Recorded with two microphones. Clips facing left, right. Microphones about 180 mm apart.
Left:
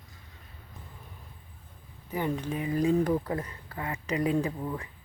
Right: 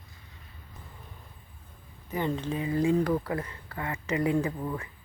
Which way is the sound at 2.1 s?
10° left (ahead or behind).